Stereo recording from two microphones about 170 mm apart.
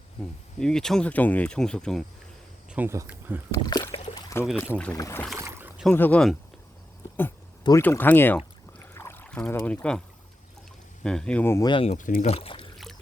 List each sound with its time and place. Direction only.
0.6 s speech: 5° left (ahead or behind)
2.6 s speech: 10° right (ahead or behind)
3.5 s speech: 25° left (ahead or behind)
4.1 s pour: 20° left (ahead or behind)
4.9 s speech: 15° left (ahead or behind)
5.4 s boat: 15° right (ahead or behind)
5.8 s speech: 10° left (ahead or behind)
7.8 s speech: 10° left (ahead or behind)
11.0 s speech: 5° left (ahead or behind)
11.6 s speech: 30° left (ahead or behind)
11.9 s speech: 50° left (ahead or behind); by 12.6 s 35° left (ahead or behind)